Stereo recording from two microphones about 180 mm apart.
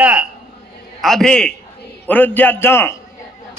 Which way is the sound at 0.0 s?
5° right (ahead or behind).